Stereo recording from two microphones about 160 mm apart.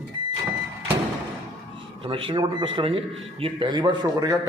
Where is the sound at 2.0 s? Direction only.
35° right (ahead or behind).